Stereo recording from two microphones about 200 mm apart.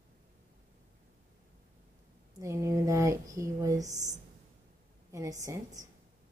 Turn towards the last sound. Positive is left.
turn(degrees=-15)  # may be behind; listen again after turning